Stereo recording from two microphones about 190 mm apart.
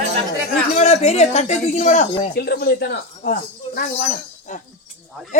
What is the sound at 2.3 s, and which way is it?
Speech, 55° left (ahead or behind).